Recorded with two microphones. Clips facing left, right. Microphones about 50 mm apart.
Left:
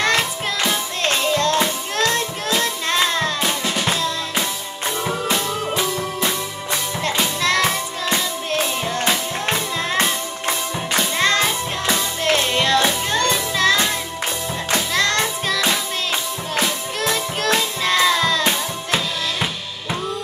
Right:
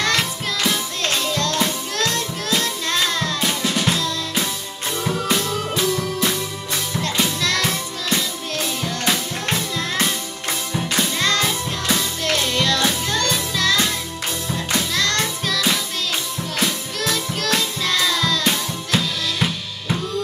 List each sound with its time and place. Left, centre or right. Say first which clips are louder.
1.0 s music: left 4 dB; left
3.3 s music: even; centre
3.9 s drum: left 1 dB; centre
5.3 s music: even; centre
7.4 s music: left 3 dB; centre
9.0 s music: even; centre
11.1 s music: left 4 dB; left
15.0 s music: left 2 dB; left
17.0 s music: left 2 dB; left
18.9 s drum: right 1 dB; centre